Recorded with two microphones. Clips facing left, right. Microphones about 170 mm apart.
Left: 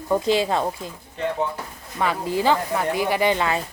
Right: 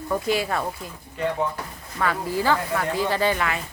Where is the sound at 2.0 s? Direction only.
20° left (ahead or behind).